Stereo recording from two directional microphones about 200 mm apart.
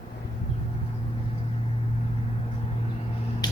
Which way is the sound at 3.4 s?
20° left (ahead or behind).